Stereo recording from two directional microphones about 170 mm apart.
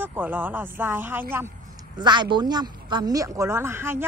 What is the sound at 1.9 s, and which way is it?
Speech, 25° right (ahead or behind).